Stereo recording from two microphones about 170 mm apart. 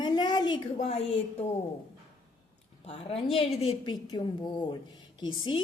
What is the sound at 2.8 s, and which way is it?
A woman's voice, 35° left (ahead or behind).